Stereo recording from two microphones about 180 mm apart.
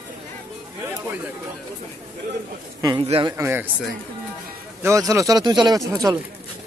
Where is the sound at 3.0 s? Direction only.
35° right (ahead or behind).